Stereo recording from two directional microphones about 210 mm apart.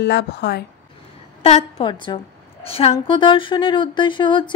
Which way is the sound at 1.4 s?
30° left (ahead or behind).